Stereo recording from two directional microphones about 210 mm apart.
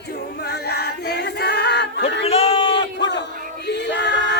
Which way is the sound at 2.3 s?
25° left (ahead or behind).